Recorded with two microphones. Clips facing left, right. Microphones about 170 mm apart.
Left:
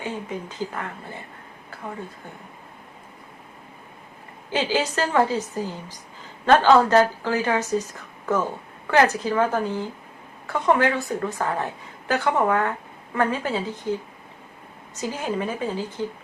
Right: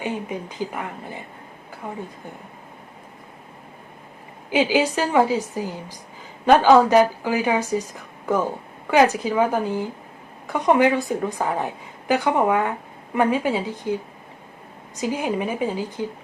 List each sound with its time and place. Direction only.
0.0 s a woman's voice: 15° right (ahead or behind)
4.4 s a woman's voice: 10° right (ahead or behind)
8.9 s a woman's voice: 15° right (ahead or behind)
14.9 s a woman's voice: 15° right (ahead or behind)